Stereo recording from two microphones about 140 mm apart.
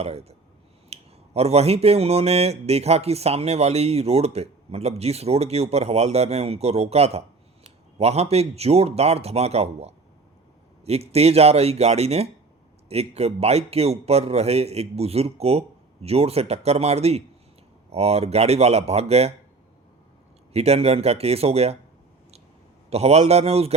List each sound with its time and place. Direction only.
0.0 s speech: 45° right (ahead or behind)
20.5 s speech: 50° right (ahead or behind)
22.9 s speech: 50° right (ahead or behind)